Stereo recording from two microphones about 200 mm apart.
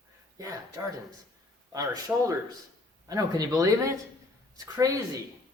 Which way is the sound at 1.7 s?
15° right (ahead or behind).